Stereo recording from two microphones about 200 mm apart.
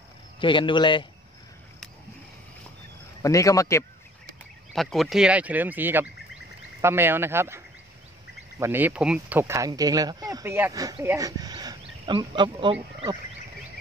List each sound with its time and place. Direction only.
0.4 s a man's voice: 25° left (ahead or behind)
3.2 s a man's voice: 15° left (ahead or behind)
4.7 s speech: centre (ahead or behind); by 12.7 s 25° right (ahead or behind)